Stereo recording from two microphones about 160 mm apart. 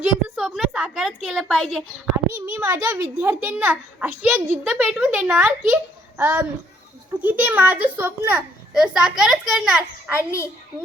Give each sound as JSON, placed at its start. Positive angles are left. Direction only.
{"t": 0.0, "sound": "a sound", "side_deg": -5}
{"t": 2.3, "sound": "a child's voice", "side_deg": -15}
{"t": 10.2, "sound": "a woman's voice", "side_deg": 15}